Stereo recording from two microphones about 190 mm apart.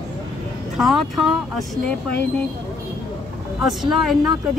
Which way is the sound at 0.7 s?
Centre (ahead or behind).